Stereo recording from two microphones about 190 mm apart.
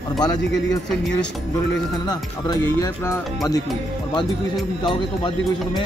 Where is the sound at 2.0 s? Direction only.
20° left (ahead or behind).